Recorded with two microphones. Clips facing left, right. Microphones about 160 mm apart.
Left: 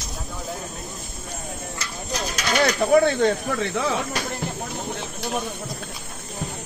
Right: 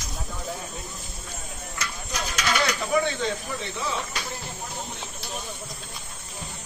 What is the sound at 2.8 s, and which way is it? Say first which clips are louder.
Speech: left 8 dB; 60° left (ahead or behind).